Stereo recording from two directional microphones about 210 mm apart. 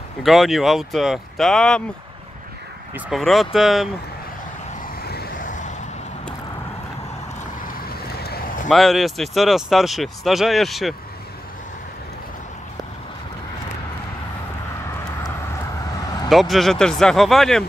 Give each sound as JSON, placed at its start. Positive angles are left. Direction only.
{"t": 0.2, "sound": "speech", "side_deg": 0}
{"t": 3.1, "sound": "speech", "side_deg": 0}
{"t": 5.0, "sound": "a sound", "side_deg": 50}
{"t": 7.6, "sound": "vehicle", "side_deg": 50}
{"t": 8.6, "sound": "speech", "side_deg": 0}
{"t": 16.3, "sound": "speech", "side_deg": 0}